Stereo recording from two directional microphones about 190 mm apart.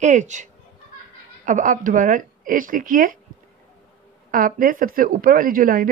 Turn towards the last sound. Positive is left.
turn(degrees=-50)  # may be behind; listen again after turning